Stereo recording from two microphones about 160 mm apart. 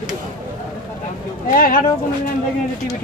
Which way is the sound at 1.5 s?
60° left (ahead or behind).